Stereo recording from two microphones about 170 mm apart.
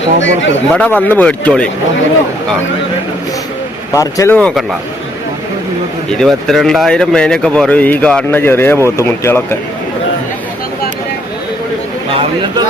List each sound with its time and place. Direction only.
0.2 s speech: 90° left
0.7 s speech: 10° left (ahead or behind)
3.9 s speech: 20° left (ahead or behind)
4.4 s speech: 5° left (ahead or behind)
6.1 s speech: 5° left (ahead or behind)